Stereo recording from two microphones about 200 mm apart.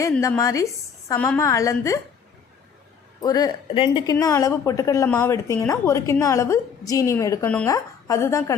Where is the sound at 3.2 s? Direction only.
20° left (ahead or behind).